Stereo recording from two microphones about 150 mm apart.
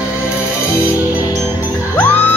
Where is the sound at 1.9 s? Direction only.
10° left (ahead or behind).